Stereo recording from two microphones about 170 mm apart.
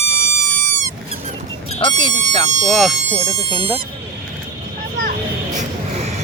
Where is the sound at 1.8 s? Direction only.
25° left (ahead or behind).